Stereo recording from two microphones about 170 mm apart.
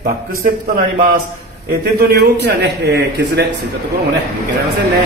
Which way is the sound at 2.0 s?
70° right (ahead or behind).